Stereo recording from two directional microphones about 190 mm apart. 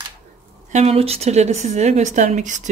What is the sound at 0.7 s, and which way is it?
Speech, 35° right (ahead or behind).